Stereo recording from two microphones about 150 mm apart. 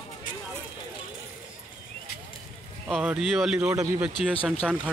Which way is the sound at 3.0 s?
5° right (ahead or behind).